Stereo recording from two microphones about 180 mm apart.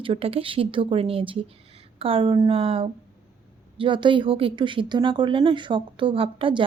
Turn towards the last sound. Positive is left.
turn(degrees=-30)  # may be behind; listen again after turning